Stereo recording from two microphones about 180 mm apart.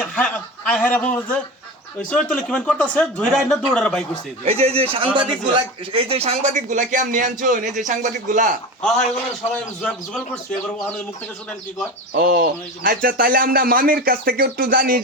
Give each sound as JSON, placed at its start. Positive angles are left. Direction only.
{"t": 0.0, "sound": "speech", "side_deg": 5}
{"t": 4.4, "sound": "speech", "side_deg": -35}
{"t": 9.8, "sound": "speech", "side_deg": 5}
{"t": 12.1, "sound": "speech", "side_deg": -55}